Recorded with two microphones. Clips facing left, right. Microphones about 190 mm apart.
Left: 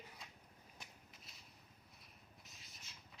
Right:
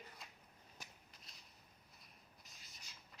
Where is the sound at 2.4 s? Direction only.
Centre (ahead or behind).